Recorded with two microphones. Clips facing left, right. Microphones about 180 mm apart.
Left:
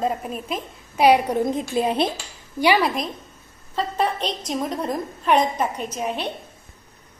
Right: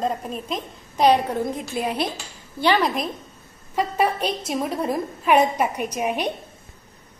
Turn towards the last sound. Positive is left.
turn(degrees=-15)  # may be behind; listen again after turning